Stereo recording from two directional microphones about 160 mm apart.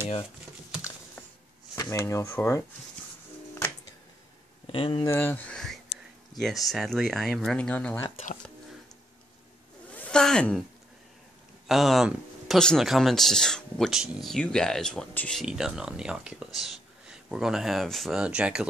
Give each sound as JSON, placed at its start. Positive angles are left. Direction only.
{"t": 1.8, "sound": "speech", "side_deg": 20}
{"t": 4.7, "sound": "speech", "side_deg": 35}
{"t": 5.0, "sound": "speech", "side_deg": 15}
{"t": 9.8, "sound": "a sound", "side_deg": 10}
{"t": 11.6, "sound": "speech", "side_deg": 0}